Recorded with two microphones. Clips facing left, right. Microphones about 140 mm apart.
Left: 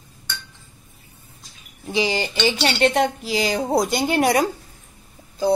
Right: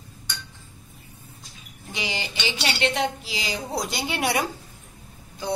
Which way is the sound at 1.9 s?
35° left (ahead or behind).